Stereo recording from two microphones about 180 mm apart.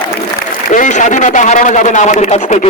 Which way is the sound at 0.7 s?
45° left (ahead or behind).